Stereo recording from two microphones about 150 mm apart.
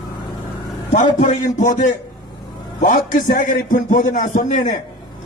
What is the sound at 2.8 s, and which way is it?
A man's voice, 60° left (ahead or behind).